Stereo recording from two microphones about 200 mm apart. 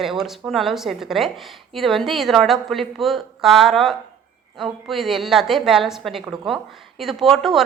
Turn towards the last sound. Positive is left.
turn(degrees=0)  # may be behind; listen again after turning